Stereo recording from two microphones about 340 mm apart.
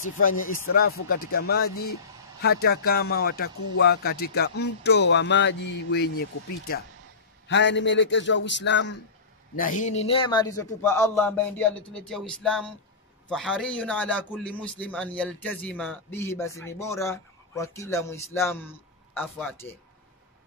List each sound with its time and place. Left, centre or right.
0.2 s a man's voice: left; by 19.5 s centre